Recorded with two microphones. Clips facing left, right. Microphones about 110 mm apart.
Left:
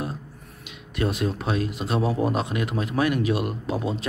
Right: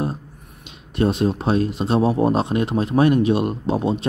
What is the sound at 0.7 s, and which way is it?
Speech, 30° right (ahead or behind).